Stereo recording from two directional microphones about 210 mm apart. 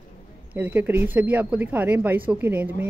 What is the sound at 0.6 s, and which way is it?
A woman's voice, 10° right (ahead or behind).